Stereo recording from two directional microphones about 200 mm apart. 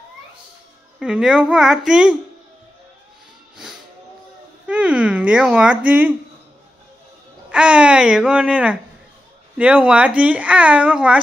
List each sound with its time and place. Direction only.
0.9 s speech: 5° right (ahead or behind)
4.6 s a sound: 5° right (ahead or behind)
7.5 s speech: 5° right (ahead or behind)